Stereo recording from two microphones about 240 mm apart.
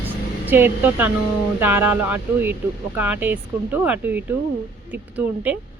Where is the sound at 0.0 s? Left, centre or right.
Centre.